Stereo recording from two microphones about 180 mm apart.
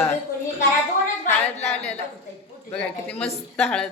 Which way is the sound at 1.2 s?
35° left (ahead or behind).